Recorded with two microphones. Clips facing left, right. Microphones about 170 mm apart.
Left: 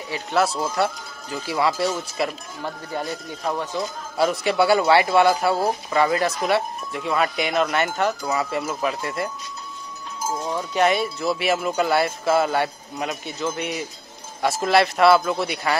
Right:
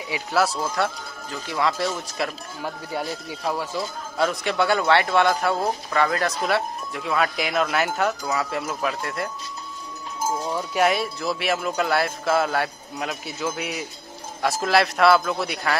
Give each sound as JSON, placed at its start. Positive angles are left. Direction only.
{"t": 0.1, "sound": "speech", "side_deg": 0}
{"t": 10.7, "sound": "speech", "side_deg": 0}